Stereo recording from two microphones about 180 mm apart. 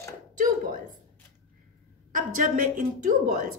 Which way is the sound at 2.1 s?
45° right (ahead or behind).